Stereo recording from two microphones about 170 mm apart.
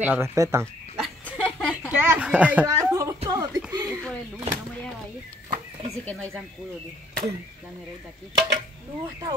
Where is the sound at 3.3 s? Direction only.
20° right (ahead or behind).